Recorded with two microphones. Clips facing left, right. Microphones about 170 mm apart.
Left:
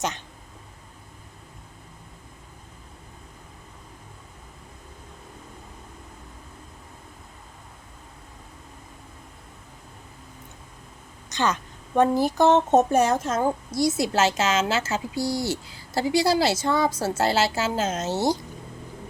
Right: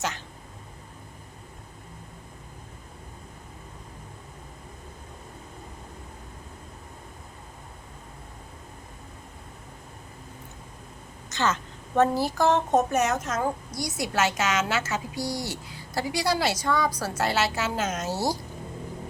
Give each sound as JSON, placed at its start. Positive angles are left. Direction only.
{"t": 11.3, "sound": "a woman's voice", "side_deg": 15}